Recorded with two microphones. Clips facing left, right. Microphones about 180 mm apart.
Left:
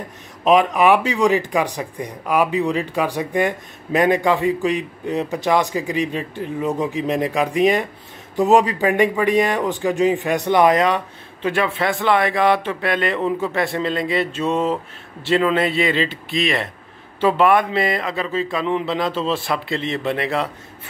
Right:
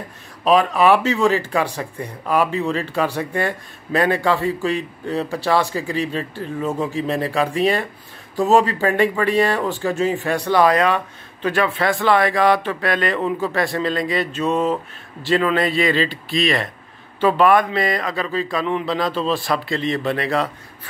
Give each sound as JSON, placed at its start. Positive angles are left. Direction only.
{"t": 0.4, "sound": "speech", "side_deg": 20}